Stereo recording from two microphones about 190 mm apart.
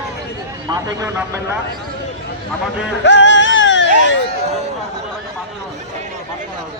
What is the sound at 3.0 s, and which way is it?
Music, 70° left (ahead or behind).